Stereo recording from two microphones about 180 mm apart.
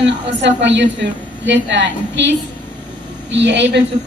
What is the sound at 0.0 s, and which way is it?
A woman's voice, 80° right.